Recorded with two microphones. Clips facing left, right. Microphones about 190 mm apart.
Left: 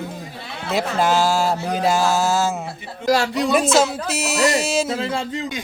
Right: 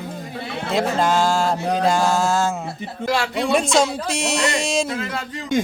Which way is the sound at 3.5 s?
5° left (ahead or behind).